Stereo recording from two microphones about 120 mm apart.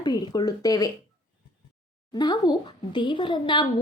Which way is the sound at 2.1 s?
35° left (ahead or behind).